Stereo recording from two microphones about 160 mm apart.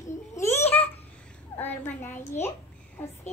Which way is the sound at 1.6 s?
10° left (ahead or behind).